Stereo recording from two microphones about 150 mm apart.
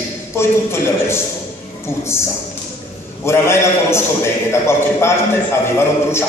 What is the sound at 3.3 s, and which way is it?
A man's voice, 15° left (ahead or behind).